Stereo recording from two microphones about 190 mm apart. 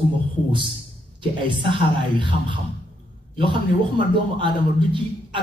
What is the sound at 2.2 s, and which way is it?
Speech, 25° right (ahead or behind).